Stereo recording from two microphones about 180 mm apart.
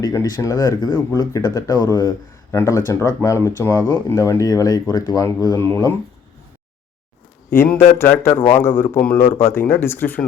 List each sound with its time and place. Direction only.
0.0 s speech: 20° left (ahead or behind)
7.5 s speech: 10° left (ahead or behind)